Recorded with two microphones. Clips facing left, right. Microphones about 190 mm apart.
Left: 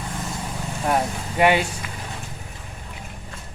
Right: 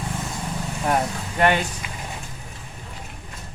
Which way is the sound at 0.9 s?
5° left (ahead or behind).